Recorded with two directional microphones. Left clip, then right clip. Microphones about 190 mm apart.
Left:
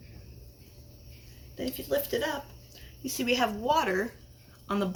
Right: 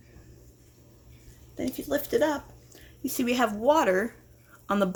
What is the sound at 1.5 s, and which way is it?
Speech, 55° right (ahead or behind).